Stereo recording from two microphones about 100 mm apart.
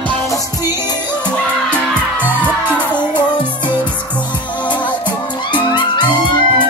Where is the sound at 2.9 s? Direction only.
50° left (ahead or behind).